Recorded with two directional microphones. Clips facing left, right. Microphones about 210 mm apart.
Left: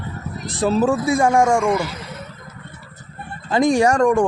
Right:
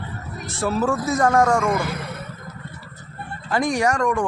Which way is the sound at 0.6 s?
20° left (ahead or behind).